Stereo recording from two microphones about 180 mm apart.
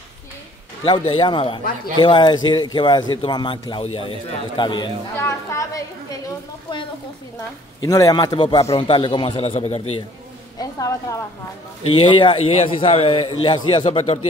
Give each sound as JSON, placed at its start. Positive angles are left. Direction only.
{"t": 0.8, "sound": "a man's voice", "side_deg": 25}
{"t": 5.1, "sound": "chatter", "side_deg": 15}
{"t": 7.8, "sound": "a man's voice", "side_deg": 20}
{"t": 10.6, "sound": "a man's voice", "side_deg": 20}
{"t": 11.8, "sound": "a man's voice", "side_deg": 30}